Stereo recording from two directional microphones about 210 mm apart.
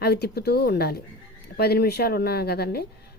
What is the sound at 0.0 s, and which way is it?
Speech, 50° left (ahead or behind).